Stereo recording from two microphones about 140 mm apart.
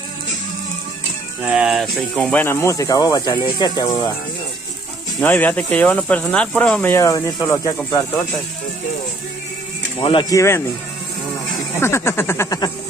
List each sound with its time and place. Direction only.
1.5 s speech: 5° right (ahead or behind); by 4.0 s 30° left (ahead or behind)
5.2 s speech: 10° left (ahead or behind)
9.9 s speech: 35° left (ahead or behind)
10.3 s speech: 20° left (ahead or behind)
11.7 s speech: 20° left (ahead or behind)